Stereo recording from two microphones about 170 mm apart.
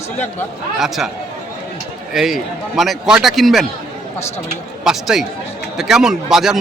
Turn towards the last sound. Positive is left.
turn(degrees=0)  # may be behind; listen again after turning